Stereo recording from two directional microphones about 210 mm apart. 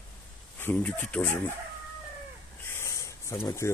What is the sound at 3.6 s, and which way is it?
Speech, 10° left (ahead or behind).